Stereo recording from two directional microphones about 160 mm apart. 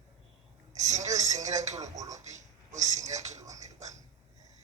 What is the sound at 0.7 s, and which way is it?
Speech, 45° right (ahead or behind).